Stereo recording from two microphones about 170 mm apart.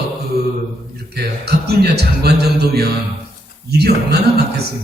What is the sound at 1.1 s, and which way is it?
A man's voice, 70° right (ahead or behind).